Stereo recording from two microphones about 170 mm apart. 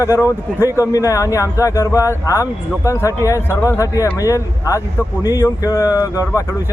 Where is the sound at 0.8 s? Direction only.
20° left (ahead or behind).